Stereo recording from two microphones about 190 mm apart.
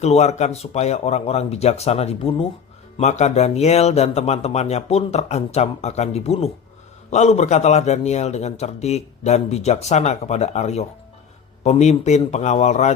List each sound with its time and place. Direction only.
0.0 s speech: 35° left (ahead or behind)